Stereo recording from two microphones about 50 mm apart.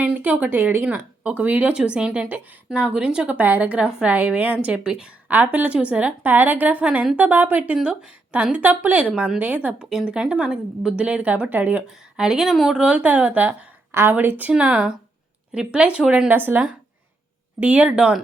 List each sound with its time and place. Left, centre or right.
0.2 s a woman's voice: right
0.9 s speech: right
3.2 s a woman's voice: right
4.6 s speech: centre
5.3 s a woman's voice: right
5.7 s a woman's voice: right
6.8 s speech: right
7.2 s a woman's voice: right
9.7 s speech: centre; by 11.8 s right
12.1 s speech: centre
12.8 s a woman's voice: right
14.5 s speech: right
16.3 s a woman's voice: right
17.6 s speech: right